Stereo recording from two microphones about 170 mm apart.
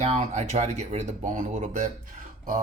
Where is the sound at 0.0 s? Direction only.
40° right (ahead or behind).